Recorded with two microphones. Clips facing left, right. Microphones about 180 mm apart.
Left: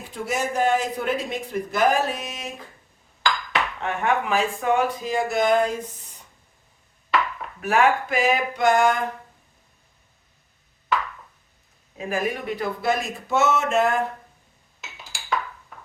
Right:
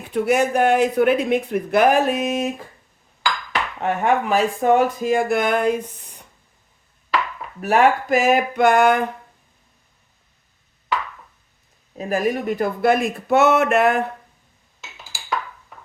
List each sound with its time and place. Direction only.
0.1 s speech: 65° right (ahead or behind)
3.8 s speech: 40° right (ahead or behind); by 6.2 s 65° right (ahead or behind)
7.6 s speech: 40° right (ahead or behind); by 9.0 s 60° right (ahead or behind)
11.9 s speech: 40° right (ahead or behind); by 14.0 s 65° right (ahead or behind)
14.8 s chink: centre (ahead or behind)
15.7 s a sound: centre (ahead or behind)